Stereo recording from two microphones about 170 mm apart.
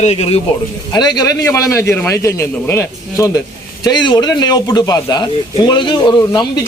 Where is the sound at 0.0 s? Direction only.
40° left (ahead or behind).